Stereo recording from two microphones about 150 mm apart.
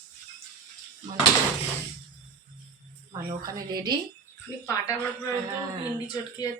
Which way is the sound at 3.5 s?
25° right (ahead or behind).